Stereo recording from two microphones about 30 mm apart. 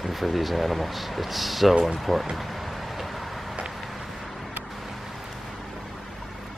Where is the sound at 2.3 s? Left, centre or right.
Centre.